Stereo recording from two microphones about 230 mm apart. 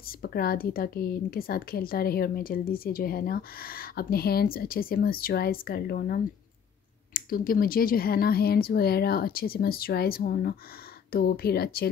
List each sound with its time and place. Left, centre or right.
0.2 s a woman's voice: left